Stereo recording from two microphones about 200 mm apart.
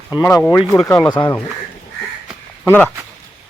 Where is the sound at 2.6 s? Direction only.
10° left (ahead or behind).